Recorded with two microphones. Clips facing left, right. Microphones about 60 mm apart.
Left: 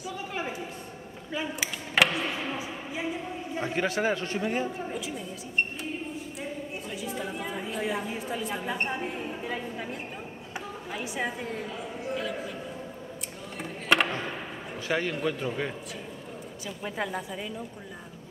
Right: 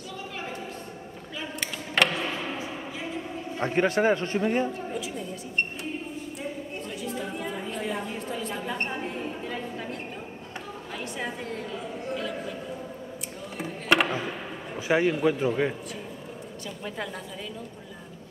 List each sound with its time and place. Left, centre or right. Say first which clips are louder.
1.6 s a sound: even; centre
3.6 s a man's voice: right 5 dB; right
4.0 s a man's voice: right 4 dB; right
4.4 s a sound: right 3 dB; centre
10.9 s a woman's voice: left 2 dB; centre
13.6 s chop: right 1 dB; centre
14.8 s a man's voice: right 6 dB; centre
16.6 s speech: left 2 dB; centre